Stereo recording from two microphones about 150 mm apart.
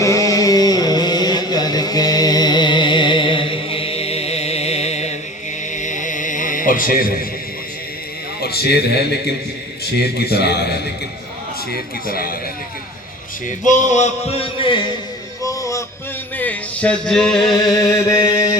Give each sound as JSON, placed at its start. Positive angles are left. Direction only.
{"t": 0.0, "sound": "chant", "side_deg": 20}
{"t": 5.7, "sound": "music", "side_deg": 55}
{"t": 8.4, "sound": "speech", "side_deg": 90}
{"t": 10.2, "sound": "a man's voice", "side_deg": 90}
{"t": 12.0, "sound": "speech", "side_deg": 80}
{"t": 13.7, "sound": "a sound", "side_deg": 55}
{"t": 15.4, "sound": "music", "side_deg": 20}
{"t": 16.4, "sound": "a sound", "side_deg": 10}
{"t": 17.5, "sound": "a sound", "side_deg": 25}